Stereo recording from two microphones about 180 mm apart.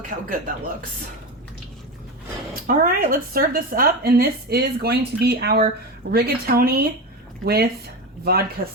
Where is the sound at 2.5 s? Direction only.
50° right (ahead or behind).